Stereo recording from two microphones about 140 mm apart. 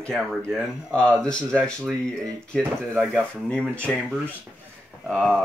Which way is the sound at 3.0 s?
5° left (ahead or behind).